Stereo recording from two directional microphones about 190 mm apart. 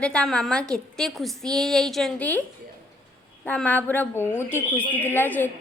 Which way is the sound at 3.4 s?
5° left (ahead or behind).